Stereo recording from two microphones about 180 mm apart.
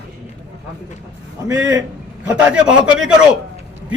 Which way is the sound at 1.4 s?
20° right (ahead or behind).